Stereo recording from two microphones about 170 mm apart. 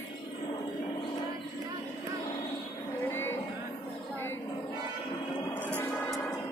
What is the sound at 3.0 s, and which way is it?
Music, 15° left (ahead or behind).